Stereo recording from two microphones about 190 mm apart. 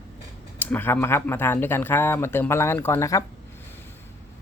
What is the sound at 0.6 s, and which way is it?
Speech, 10° left (ahead or behind).